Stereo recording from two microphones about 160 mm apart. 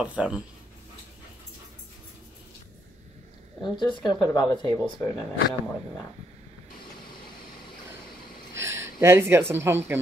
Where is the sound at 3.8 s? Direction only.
30° left (ahead or behind).